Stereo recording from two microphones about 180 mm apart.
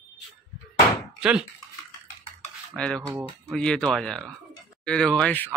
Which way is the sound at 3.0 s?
5° right (ahead or behind).